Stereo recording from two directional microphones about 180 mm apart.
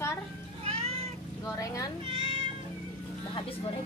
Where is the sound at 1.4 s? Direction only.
20° left (ahead or behind).